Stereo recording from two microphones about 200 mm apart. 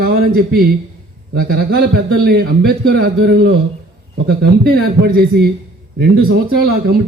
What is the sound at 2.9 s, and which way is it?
A man's voice, 50° right (ahead or behind).